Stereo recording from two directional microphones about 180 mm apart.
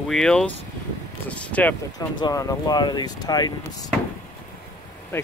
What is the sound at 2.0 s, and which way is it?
Speech, 20° left (ahead or behind).